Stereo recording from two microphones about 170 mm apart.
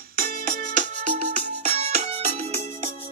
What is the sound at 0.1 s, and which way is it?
Music, 55° right (ahead or behind).